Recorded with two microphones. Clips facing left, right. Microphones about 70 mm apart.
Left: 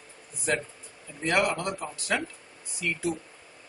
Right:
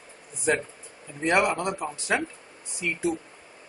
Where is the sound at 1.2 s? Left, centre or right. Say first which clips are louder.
Right 3 dB; centre.